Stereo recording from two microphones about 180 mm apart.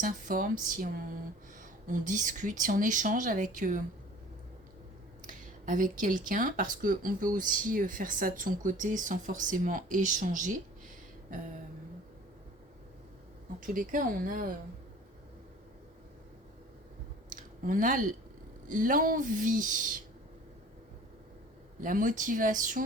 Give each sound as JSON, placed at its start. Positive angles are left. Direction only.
{"t": 0.0, "sound": "speech", "side_deg": -50}
{"t": 5.2, "sound": "speech", "side_deg": -45}
{"t": 13.6, "sound": "speech", "side_deg": -50}
{"t": 17.2, "sound": "a sound", "side_deg": -45}
{"t": 18.7, "sound": "speech", "side_deg": -50}
{"t": 21.8, "sound": "speech", "side_deg": -50}